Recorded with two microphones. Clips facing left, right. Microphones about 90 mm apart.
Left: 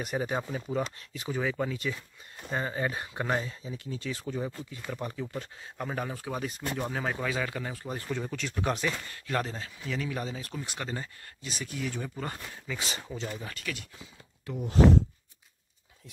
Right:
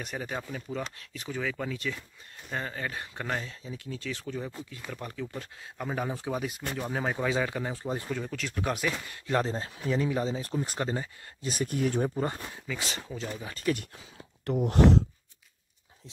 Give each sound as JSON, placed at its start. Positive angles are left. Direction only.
{"t": 0.2, "sound": "speech", "side_deg": 20}
{"t": 0.9, "sound": "speech", "side_deg": 5}
{"t": 2.5, "sound": "speech", "side_deg": 15}
{"t": 5.4, "sound": "speech", "side_deg": -5}
{"t": 8.1, "sound": "speech", "side_deg": 0}
{"t": 9.1, "sound": "speech", "side_deg": -20}
{"t": 11.4, "sound": "speech", "side_deg": -45}
{"t": 12.6, "sound": "speech", "side_deg": 0}
{"t": 14.4, "sound": "speech", "side_deg": -70}